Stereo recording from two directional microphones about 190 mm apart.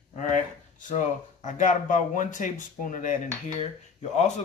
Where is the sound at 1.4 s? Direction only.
40° left (ahead or behind).